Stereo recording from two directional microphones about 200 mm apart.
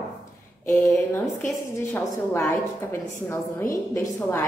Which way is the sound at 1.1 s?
10° left (ahead or behind).